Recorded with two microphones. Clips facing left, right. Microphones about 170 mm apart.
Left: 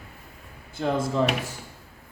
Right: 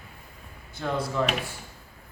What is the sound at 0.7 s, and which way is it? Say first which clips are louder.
Speech: left 4 dB; 25° left (ahead or behind).